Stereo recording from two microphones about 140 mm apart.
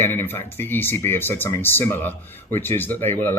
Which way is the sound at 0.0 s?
15° left (ahead or behind).